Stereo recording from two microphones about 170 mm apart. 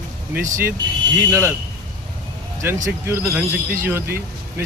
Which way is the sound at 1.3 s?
15° right (ahead or behind).